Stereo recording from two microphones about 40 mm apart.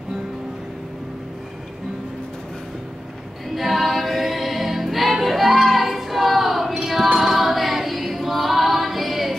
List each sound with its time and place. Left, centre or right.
3.5 s music: centre
7.2 s choir: centre